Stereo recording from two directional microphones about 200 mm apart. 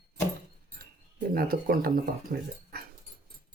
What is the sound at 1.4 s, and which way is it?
Speech, 45° right (ahead or behind).